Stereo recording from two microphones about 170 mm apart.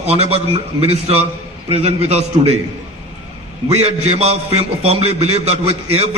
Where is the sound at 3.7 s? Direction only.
40° right (ahead or behind).